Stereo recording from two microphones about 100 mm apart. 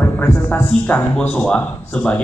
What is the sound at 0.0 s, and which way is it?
Speech, 20° left (ahead or behind).